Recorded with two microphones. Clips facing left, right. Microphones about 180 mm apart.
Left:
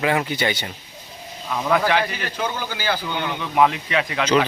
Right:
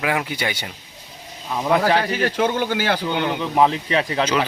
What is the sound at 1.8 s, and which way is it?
Speech, 35° right (ahead or behind).